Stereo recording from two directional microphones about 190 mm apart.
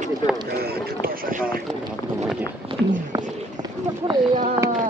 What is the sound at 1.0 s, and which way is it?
Speech, 50° right (ahead or behind).